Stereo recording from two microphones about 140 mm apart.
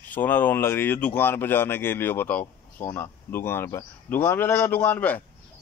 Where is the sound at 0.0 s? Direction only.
10° left (ahead or behind).